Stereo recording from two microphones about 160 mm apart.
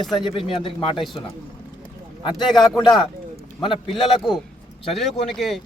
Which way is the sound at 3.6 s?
30° left (ahead or behind).